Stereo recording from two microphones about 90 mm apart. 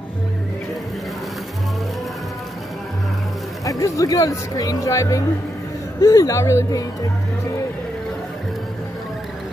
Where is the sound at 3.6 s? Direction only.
35° left (ahead or behind).